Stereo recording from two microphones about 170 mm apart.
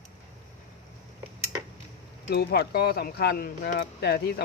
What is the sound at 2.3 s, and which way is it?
Speech, 70° left (ahead or behind).